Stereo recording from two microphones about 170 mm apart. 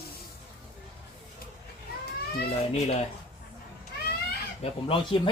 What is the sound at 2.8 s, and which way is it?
Speech, 40° left (ahead or behind).